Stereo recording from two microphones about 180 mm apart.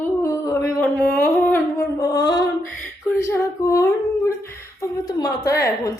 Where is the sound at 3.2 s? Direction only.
15° left (ahead or behind).